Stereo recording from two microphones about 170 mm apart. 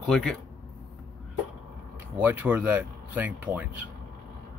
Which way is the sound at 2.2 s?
10° right (ahead or behind).